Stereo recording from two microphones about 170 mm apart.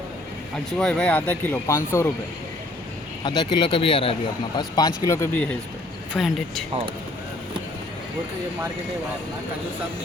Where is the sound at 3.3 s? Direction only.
25° left (ahead or behind).